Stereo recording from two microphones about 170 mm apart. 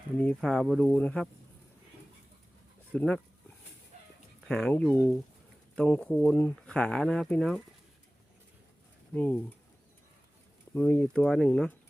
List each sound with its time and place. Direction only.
0.2 s speech: 5° left (ahead or behind)
2.9 s speech: 5° left (ahead or behind)
4.4 s speech: 5° left (ahead or behind)
9.1 s speech: 10° left (ahead or behind)
10.8 s speech: 10° left (ahead or behind)